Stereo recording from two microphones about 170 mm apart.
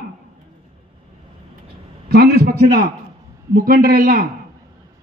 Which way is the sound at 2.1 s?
65° right (ahead or behind).